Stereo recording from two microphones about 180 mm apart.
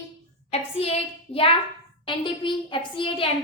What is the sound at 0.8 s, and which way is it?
A woman's voice, 30° left (ahead or behind).